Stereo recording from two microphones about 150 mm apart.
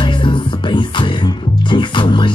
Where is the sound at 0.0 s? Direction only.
35° left (ahead or behind).